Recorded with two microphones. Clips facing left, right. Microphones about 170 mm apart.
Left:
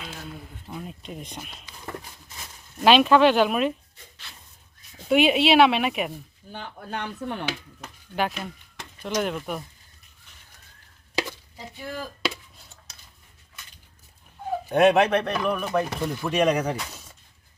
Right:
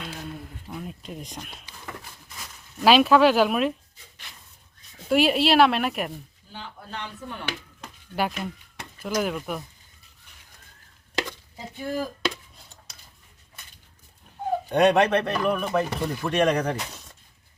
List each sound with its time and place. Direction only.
0.7 s speech: centre (ahead or behind)
2.8 s speech: 5° right (ahead or behind)
5.0 s speech: centre (ahead or behind)
6.5 s speech: 55° left (ahead or behind)
8.1 s speech: 5° right (ahead or behind)
11.1 s a sound: 10° left (ahead or behind)
14.7 s speech: 5° left (ahead or behind)
16.9 s a sound: 5° left (ahead or behind)